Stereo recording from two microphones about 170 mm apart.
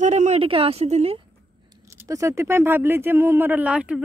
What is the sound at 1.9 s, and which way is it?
Speech, 20° right (ahead or behind).